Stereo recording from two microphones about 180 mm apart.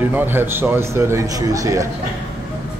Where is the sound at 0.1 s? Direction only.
10° right (ahead or behind).